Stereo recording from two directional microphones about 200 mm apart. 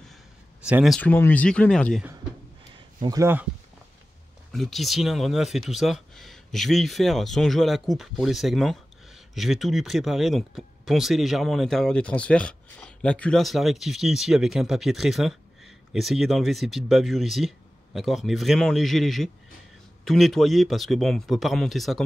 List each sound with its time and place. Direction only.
0.7 s speech: 5° right (ahead or behind)
3.0 s speech: 15° right (ahead or behind)
4.5 s speech: centre (ahead or behind)